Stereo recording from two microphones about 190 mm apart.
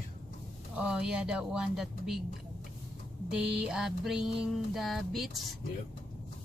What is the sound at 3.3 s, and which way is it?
Speech, 5° right (ahead or behind).